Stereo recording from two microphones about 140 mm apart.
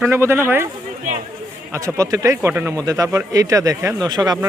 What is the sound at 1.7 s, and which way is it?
A man's voice, 20° right (ahead or behind).